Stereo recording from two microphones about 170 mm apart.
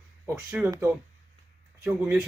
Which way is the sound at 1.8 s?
5° right (ahead or behind).